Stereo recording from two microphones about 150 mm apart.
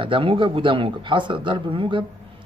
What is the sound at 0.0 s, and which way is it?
Speech, 35° right (ahead or behind).